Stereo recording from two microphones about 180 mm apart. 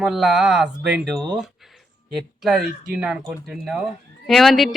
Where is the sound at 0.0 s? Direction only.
Centre (ahead or behind).